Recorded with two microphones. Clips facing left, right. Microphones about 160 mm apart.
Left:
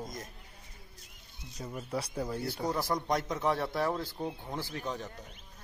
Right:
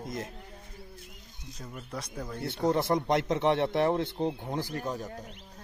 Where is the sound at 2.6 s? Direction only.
25° right (ahead or behind); by 5.1 s 10° right (ahead or behind).